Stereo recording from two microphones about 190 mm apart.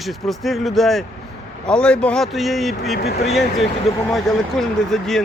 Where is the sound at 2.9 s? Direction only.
55° left (ahead or behind).